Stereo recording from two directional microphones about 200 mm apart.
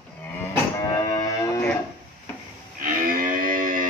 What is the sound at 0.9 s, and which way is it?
Music, 15° left (ahead or behind).